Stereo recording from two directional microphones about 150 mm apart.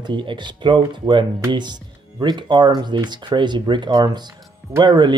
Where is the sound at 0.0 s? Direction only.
35° right (ahead or behind).